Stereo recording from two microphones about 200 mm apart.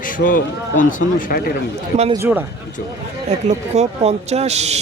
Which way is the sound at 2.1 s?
10° right (ahead or behind).